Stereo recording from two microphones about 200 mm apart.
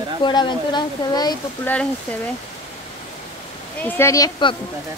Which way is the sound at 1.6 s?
5° left (ahead or behind).